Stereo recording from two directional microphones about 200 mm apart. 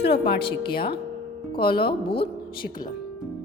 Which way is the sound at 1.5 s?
25° left (ahead or behind).